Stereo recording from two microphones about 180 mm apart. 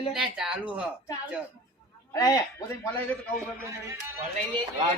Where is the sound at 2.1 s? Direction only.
20° left (ahead or behind).